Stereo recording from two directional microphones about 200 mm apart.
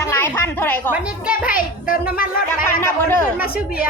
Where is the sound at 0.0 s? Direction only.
15° left (ahead or behind).